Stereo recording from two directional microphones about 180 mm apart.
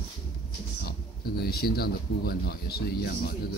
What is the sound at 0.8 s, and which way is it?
Speech, 60° left (ahead or behind).